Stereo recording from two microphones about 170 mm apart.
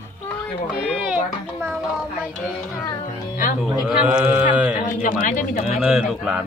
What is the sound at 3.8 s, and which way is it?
Speech, 5° right (ahead or behind).